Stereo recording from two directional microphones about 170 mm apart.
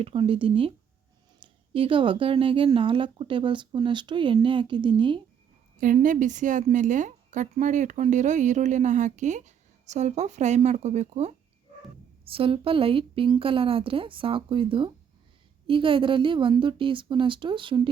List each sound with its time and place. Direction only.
0.0 s a woman's voice: 30° right (ahead or behind)
5.7 s a woman's voice: 50° right (ahead or behind); by 17.8 s 30° right (ahead or behind)